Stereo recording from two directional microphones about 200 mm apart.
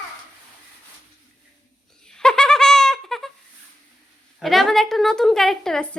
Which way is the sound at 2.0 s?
5° left (ahead or behind).